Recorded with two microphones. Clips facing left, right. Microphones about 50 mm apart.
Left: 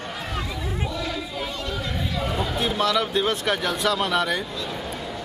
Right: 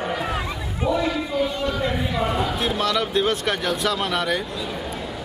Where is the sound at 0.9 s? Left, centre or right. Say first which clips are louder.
Right 7 dB; centre.